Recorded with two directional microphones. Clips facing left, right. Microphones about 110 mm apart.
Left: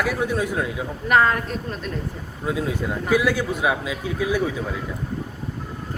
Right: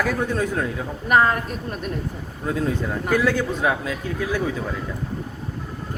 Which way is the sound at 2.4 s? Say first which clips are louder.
Right 1 dB; 10° left (ahead or behind).